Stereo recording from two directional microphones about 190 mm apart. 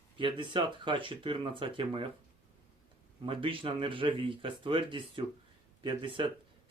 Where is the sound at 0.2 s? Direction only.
25° right (ahead or behind).